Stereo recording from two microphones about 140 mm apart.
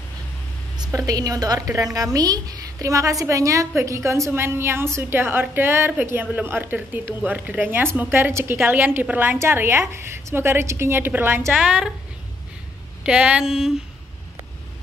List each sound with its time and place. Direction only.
0.7 s a woman's voice: 25° right (ahead or behind)
11.5 s speech: 5° right (ahead or behind)
13.0 s speech: 10° right (ahead or behind)